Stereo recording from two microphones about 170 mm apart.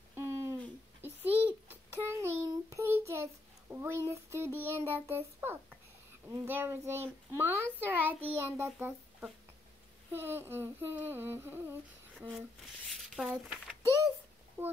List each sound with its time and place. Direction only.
0.1 s a sound: 15° right (ahead or behind)
1.0 s child singing: 10° right (ahead or behind)
3.7 s a child's voice: 15° right (ahead or behind)
6.2 s humming: 15° right (ahead or behind)
13.0 s speech: centre (ahead or behind)
14.6 s humming: 15° right (ahead or behind)